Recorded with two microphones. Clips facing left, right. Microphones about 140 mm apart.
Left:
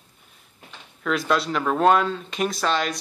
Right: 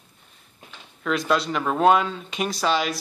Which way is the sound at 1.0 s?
Centre (ahead or behind).